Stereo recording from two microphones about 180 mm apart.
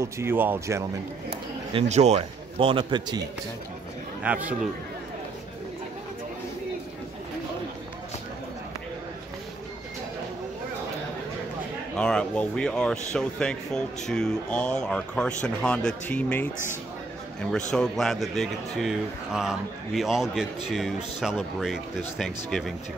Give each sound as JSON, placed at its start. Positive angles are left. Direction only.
{"t": 0.0, "sound": "speech", "side_deg": -15}
{"t": 1.7, "sound": "a man's voice", "side_deg": -35}
{"t": 4.2, "sound": "speech", "side_deg": -5}
{"t": 12.0, "sound": "speech", "side_deg": 5}